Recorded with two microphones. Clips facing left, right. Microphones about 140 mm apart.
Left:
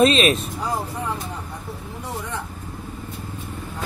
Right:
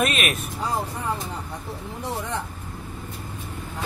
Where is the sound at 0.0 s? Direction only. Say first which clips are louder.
Left 8 dB; 25° left (ahead or behind).